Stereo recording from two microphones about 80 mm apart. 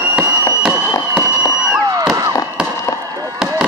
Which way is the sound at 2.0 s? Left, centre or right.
Right.